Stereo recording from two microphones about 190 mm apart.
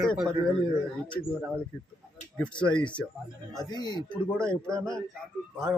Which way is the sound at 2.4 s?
5° left (ahead or behind).